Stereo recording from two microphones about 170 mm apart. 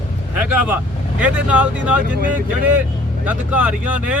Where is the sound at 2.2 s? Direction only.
50° right (ahead or behind).